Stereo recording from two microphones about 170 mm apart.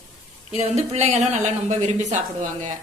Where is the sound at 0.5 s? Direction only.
40° right (ahead or behind).